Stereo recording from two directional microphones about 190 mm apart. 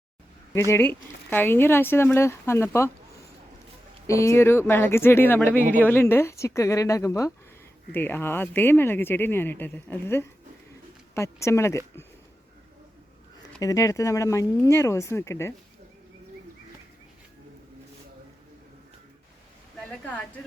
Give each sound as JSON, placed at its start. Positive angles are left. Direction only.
{"t": 0.7, "sound": "speech", "side_deg": 10}
{"t": 4.0, "sound": "speech", "side_deg": 15}
{"t": 13.6, "sound": "speech", "side_deg": 15}
{"t": 19.8, "sound": "a woman's voice", "side_deg": 5}